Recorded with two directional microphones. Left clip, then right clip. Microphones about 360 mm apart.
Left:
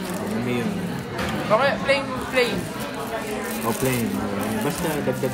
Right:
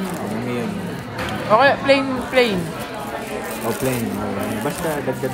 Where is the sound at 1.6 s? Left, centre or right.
Right.